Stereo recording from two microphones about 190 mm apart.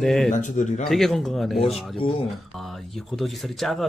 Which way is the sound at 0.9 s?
Centre (ahead or behind).